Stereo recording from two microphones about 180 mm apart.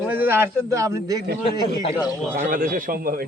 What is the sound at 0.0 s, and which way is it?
Speech, 10° right (ahead or behind).